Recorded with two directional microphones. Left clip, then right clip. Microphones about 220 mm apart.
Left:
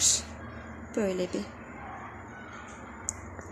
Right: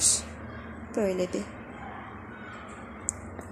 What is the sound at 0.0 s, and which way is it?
Vehicle, 10° left (ahead or behind).